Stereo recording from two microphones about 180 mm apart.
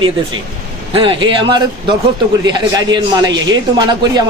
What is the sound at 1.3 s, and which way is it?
Speech, 25° right (ahead or behind).